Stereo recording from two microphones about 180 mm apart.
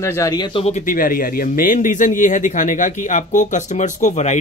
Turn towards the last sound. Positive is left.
turn(degrees=40)  # may be behind; listen again after turning